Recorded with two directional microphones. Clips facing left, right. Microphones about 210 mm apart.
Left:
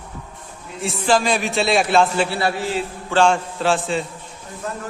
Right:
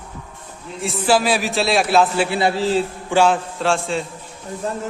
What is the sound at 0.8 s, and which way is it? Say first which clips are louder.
A man's voice: right 1 dB; 5° right (ahead or behind).